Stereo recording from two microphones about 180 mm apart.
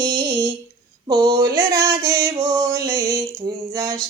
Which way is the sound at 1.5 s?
15° right (ahead or behind).